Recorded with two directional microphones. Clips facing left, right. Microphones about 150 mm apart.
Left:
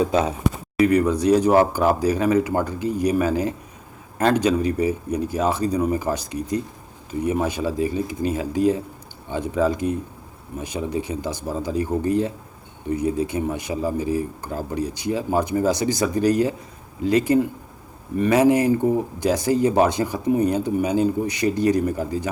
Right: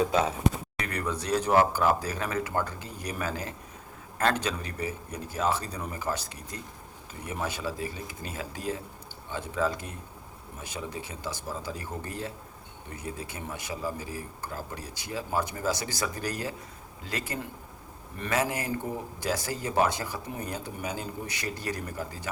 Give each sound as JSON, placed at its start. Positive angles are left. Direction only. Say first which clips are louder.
{"t": 0.0, "sound": "speech", "louder": "left 5 dB", "side_deg": 20}